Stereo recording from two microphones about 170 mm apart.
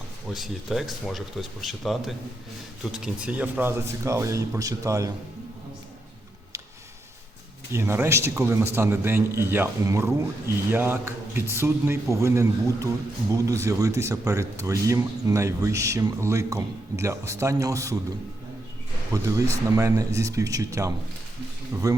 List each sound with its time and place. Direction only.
0.3 s a man's voice: centre (ahead or behind); by 5.1 s 20° right (ahead or behind)
7.7 s a man's voice: 15° right (ahead or behind)
19.1 s a man's voice: 20° right (ahead or behind)